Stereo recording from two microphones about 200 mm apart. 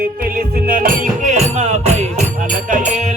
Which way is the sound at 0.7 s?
45° right (ahead or behind).